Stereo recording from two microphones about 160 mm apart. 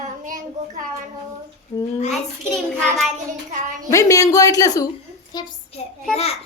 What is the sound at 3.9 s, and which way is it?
Speech, 20° left (ahead or behind).